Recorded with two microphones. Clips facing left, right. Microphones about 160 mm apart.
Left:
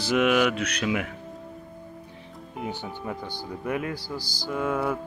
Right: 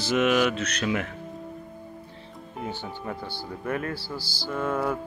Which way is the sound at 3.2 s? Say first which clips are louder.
Left 1 dB; 15° left (ahead or behind).